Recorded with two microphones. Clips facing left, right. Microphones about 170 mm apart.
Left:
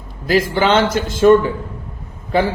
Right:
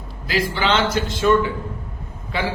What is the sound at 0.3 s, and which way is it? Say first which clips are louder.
Speech: left 6 dB; 45° left (ahead or behind).